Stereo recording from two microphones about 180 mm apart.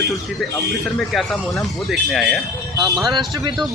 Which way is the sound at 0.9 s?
Centre (ahead or behind).